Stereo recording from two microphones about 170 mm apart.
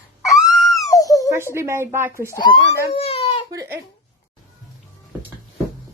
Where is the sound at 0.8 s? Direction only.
20° left (ahead or behind).